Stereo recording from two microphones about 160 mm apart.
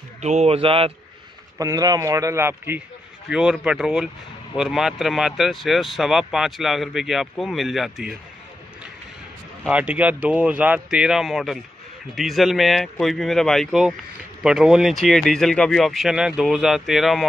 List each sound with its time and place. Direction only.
0.2 s a man's voice: 45° right (ahead or behind)
1.6 s a man's voice: 20° right (ahead or behind); by 8.2 s centre (ahead or behind)
9.7 s speech: 10° right (ahead or behind)